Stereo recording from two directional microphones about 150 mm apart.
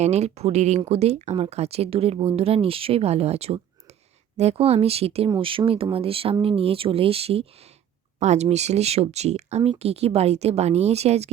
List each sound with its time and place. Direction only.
0.0 s speech: 45° right (ahead or behind)